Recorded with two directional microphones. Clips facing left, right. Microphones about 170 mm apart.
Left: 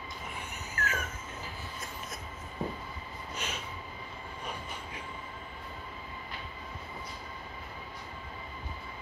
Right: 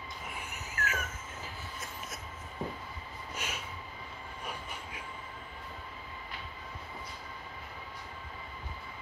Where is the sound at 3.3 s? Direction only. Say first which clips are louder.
Left 1 dB; 5° right (ahead or behind).